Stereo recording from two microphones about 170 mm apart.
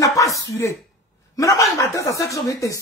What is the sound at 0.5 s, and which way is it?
A woman's voice, 15° left (ahead or behind).